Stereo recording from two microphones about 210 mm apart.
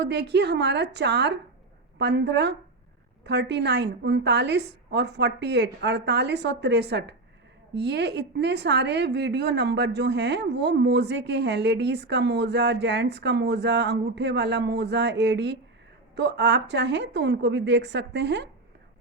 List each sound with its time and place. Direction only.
0.0 s a woman's voice: 55° right (ahead or behind)